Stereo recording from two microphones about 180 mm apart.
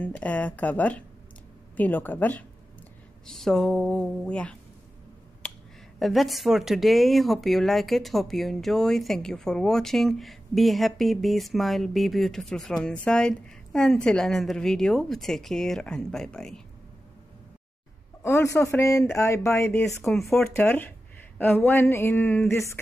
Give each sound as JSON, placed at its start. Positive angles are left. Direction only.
{"t": 0.0, "sound": "speech", "side_deg": 10}
{"t": 5.4, "sound": "a sound", "side_deg": 5}
{"t": 5.9, "sound": "speech", "side_deg": 0}
{"t": 18.2, "sound": "speech", "side_deg": 15}
{"t": 20.1, "sound": "speech", "side_deg": 0}